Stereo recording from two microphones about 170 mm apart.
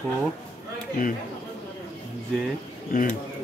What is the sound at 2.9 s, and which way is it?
Speech, 50° left (ahead or behind).